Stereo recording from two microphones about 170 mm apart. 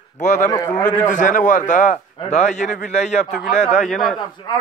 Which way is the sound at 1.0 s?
50° left (ahead or behind).